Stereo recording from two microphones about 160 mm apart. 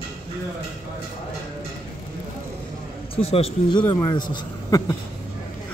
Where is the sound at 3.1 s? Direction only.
40° left (ahead or behind).